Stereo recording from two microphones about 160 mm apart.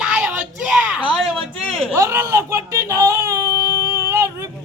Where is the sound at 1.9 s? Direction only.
15° right (ahead or behind).